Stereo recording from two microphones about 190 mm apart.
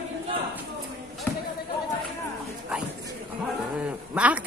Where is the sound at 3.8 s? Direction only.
5° right (ahead or behind).